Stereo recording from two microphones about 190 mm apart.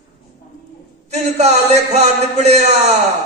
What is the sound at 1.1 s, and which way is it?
A man's voice, 35° right (ahead or behind).